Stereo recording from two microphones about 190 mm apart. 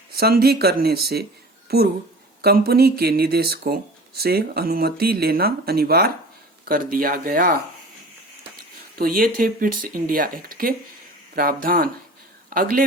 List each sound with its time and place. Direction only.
0.1 s speech: 55° right (ahead or behind)
9.0 s a man's voice: 50° right (ahead or behind)